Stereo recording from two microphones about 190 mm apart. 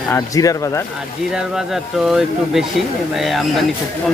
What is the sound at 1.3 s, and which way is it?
Speech, centre (ahead or behind).